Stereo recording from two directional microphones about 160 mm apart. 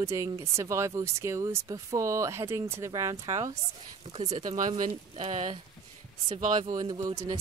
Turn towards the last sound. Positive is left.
turn(degrees=-20)  # may be behind; listen again after turning